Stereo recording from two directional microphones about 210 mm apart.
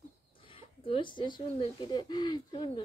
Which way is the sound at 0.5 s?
25° left (ahead or behind).